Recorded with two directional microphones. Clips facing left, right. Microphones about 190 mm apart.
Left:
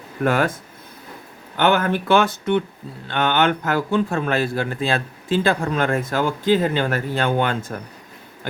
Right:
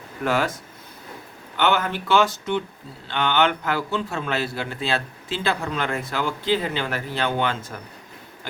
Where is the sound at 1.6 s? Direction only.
50° left (ahead or behind).